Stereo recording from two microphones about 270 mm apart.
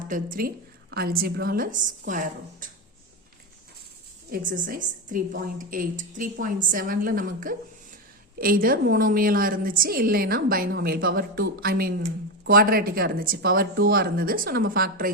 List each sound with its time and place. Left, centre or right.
0.1 s a woman's voice: right
4.3 s a woman's voice: right